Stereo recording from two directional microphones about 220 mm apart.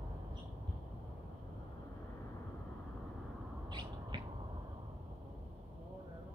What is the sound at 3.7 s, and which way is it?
Bird, 20° right (ahead or behind).